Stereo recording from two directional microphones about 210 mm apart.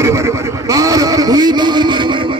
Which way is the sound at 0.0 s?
15° right (ahead or behind).